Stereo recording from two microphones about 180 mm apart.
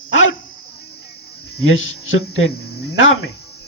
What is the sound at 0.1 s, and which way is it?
Dog, 90° left.